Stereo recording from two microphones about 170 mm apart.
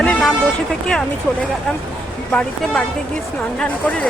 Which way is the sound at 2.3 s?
5° left (ahead or behind).